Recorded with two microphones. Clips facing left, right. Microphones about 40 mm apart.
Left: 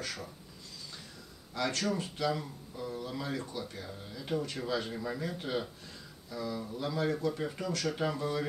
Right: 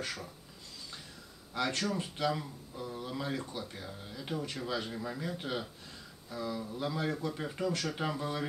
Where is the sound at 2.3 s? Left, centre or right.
Centre.